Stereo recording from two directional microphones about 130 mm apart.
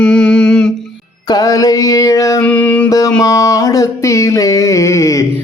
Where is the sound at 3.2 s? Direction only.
25° left (ahead or behind).